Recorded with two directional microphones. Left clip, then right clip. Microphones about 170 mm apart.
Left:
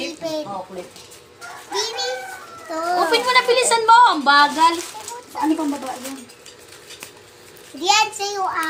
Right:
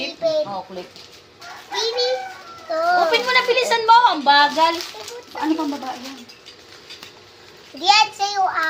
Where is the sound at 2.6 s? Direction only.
5° right (ahead or behind).